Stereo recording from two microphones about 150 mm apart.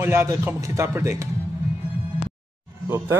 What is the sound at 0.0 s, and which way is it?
Speech, 15° right (ahead or behind).